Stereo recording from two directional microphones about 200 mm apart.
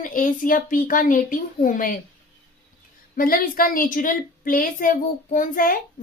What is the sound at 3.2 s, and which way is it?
A woman's voice, 45° left (ahead or behind).